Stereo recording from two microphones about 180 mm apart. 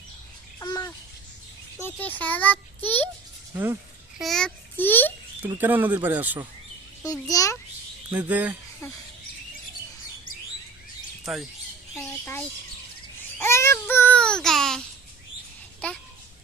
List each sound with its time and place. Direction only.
0.6 s babbling: 20° left (ahead or behind)
1.8 s a child's voice: 10° left (ahead or behind)
3.5 s speech: 15° right (ahead or behind)
4.2 s a child's voice: centre (ahead or behind)
5.4 s speech: 10° right (ahead or behind)
7.0 s a child's voice: 20° left (ahead or behind)
8.3 s speech: 10° right (ahead or behind)
8.8 s a child's voice: 15° left (ahead or behind)
11.9 s speech: 10° left (ahead or behind)
13.4 s child singing: 15° left (ahead or behind)